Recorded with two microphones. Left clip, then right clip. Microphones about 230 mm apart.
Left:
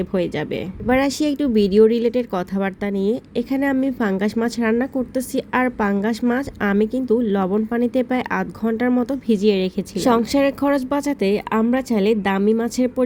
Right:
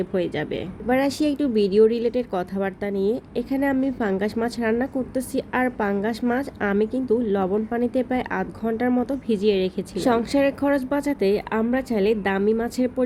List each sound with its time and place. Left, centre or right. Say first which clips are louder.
0.0 s speech: left 2 dB; left